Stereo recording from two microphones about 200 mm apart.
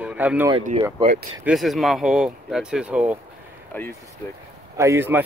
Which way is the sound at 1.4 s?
Centre (ahead or behind).